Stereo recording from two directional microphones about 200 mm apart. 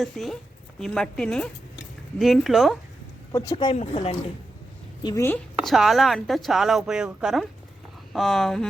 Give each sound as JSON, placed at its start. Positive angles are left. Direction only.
{"t": 0.0, "sound": "speech", "side_deg": 0}
{"t": 3.3, "sound": "speech", "side_deg": 20}
{"t": 5.0, "sound": "a woman's voice", "side_deg": 15}
{"t": 5.6, "sound": "speech", "side_deg": 0}